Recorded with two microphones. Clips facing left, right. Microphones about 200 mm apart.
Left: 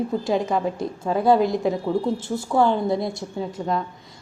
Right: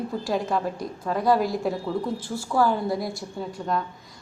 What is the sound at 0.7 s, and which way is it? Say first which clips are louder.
A woman's voice: left 4 dB; 25° left (ahead or behind).